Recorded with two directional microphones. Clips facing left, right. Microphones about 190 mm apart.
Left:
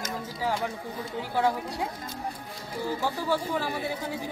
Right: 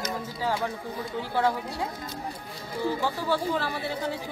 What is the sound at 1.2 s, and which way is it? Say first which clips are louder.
Speech: even; 15° left (ahead or behind).